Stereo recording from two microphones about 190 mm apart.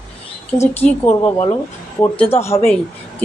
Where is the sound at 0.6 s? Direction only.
10° left (ahead or behind).